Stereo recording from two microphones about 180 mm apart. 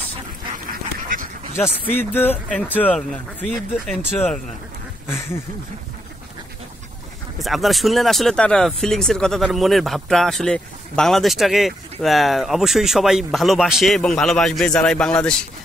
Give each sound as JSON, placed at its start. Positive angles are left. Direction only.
{"t": 0.7, "sound": "duck", "side_deg": -50}
{"t": 1.6, "sound": "speech", "side_deg": 10}
{"t": 7.3, "sound": "speech", "side_deg": 0}